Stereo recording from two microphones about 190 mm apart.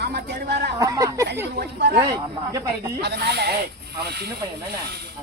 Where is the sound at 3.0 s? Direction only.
60° right (ahead or behind).